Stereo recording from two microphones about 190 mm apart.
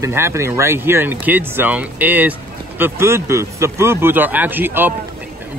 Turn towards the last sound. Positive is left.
turn(degrees=-10)  # may be behind; listen again after turning